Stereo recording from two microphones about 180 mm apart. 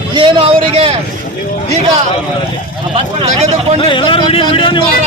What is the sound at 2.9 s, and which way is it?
Speech, 35° right (ahead or behind).